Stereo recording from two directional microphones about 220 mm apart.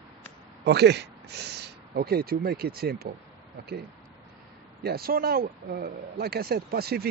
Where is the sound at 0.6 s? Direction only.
50° right (ahead or behind).